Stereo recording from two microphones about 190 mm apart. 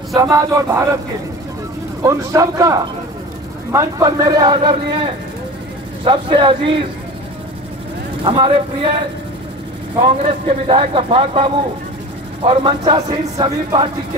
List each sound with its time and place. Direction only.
0.2 s speech: 15° right (ahead or behind)
2.0 s speech: 15° right (ahead or behind)
8.2 s speech: 25° right (ahead or behind)
9.9 s speech: 30° right (ahead or behind)